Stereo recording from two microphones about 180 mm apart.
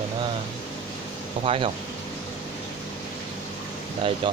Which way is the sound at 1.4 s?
30° right (ahead or behind).